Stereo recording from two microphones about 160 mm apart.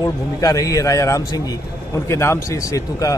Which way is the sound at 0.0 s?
20° left (ahead or behind).